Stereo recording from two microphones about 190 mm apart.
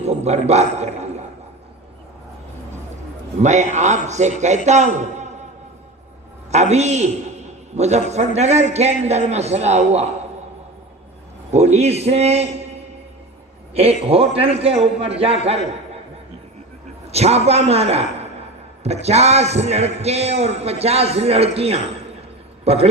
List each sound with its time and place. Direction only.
0.0 s a man's voice: 35° right (ahead or behind)
3.4 s a man's voice: 40° right (ahead or behind)
6.5 s a man's voice: 35° right (ahead or behind)
11.5 s a man's voice: 35° right (ahead or behind)
13.7 s a man's voice: 30° right (ahead or behind)
17.1 s a man's voice: 35° right (ahead or behind)